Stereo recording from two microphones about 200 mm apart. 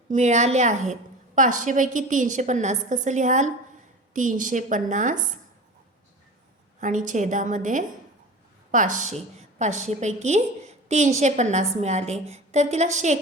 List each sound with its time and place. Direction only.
0.1 s a woman's voice: 35° right (ahead or behind)
6.7 s a woman's voice: 40° right (ahead or behind)